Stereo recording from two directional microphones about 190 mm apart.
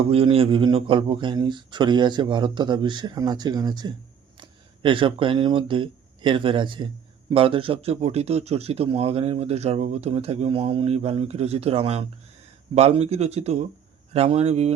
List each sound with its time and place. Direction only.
0.1 s a man's voice: 30° right (ahead or behind)